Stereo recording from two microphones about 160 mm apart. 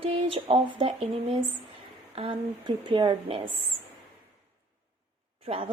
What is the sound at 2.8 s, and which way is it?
Speech, 30° right (ahead or behind).